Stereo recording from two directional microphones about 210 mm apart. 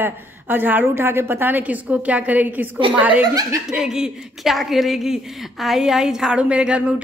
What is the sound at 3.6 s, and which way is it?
A woman's voice, centre (ahead or behind).